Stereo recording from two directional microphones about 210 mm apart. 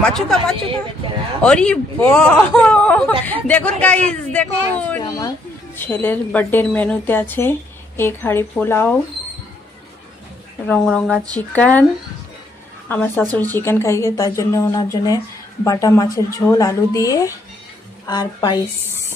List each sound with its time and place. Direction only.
0.0 s speech: 5° left (ahead or behind)
10.7 s speech: 5° left (ahead or behind)
12.8 s a woman's voice: 10° left (ahead or behind)
18.9 s music: 10° right (ahead or behind)